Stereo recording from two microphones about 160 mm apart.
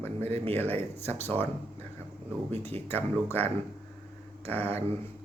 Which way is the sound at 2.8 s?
15° left (ahead or behind).